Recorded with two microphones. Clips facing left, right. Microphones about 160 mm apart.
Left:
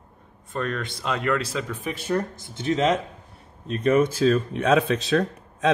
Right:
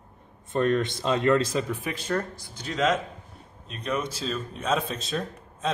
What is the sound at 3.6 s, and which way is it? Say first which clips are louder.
Speech: left 10 dB; 50° left (ahead or behind).